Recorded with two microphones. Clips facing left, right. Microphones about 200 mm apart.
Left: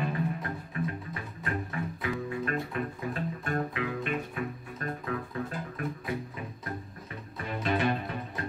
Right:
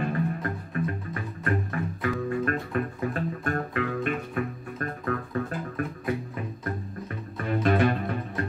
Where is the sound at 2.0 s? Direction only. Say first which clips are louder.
Right 6 dB; 50° right (ahead or behind).